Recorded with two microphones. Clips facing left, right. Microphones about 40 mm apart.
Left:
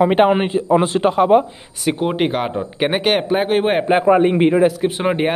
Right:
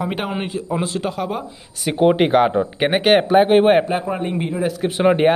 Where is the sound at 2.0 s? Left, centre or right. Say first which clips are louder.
Right 7 dB; centre.